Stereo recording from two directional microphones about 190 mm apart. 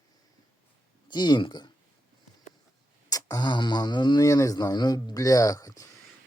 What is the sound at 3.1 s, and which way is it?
Speech, 20° left (ahead or behind).